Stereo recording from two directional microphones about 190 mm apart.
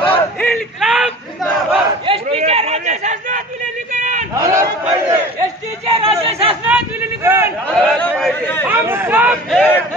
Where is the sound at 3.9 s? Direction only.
40° right (ahead or behind).